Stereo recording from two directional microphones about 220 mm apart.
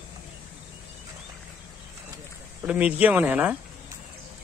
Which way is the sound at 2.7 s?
5° right (ahead or behind).